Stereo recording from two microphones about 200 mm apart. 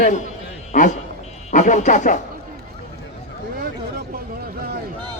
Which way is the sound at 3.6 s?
50° right (ahead or behind).